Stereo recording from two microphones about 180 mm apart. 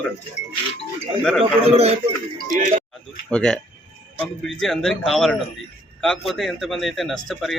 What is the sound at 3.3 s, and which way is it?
A man's voice, 5° left (ahead or behind).